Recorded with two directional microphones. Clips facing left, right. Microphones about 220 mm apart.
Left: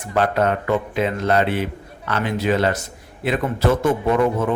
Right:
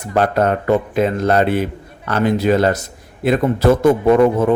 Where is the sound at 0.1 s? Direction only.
40° right (ahead or behind).